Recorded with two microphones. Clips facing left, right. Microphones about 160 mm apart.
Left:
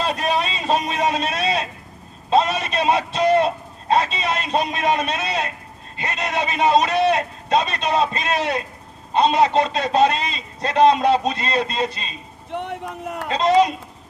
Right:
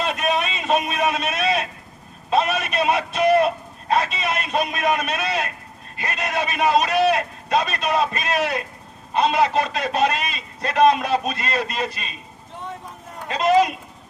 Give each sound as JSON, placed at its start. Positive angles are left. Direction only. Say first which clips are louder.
{"t": 0.0, "sound": "a sound", "louder": "left 1 dB", "side_deg": 30}
{"t": 2.3, "sound": "a man's voice", "louder": "left 2 dB", "side_deg": 30}
{"t": 12.5, "sound": "speech", "louder": "left 7 dB", "side_deg": 70}
{"t": 13.3, "sound": "a man's voice", "louder": "left 1 dB", "side_deg": 30}